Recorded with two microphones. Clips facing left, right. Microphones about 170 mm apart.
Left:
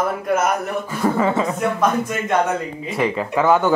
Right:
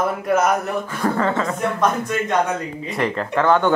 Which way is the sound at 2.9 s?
5° left (ahead or behind).